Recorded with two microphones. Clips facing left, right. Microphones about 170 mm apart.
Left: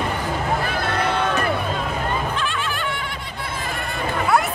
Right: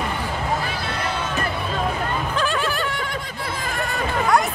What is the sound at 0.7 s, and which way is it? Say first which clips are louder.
Music: left 4 dB; 55° left (ahead or behind).